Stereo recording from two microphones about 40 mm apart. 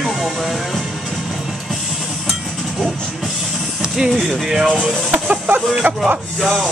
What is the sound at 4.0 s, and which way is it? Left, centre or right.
Speech, centre.